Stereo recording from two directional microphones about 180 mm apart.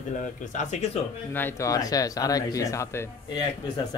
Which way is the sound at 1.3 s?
10° left (ahead or behind).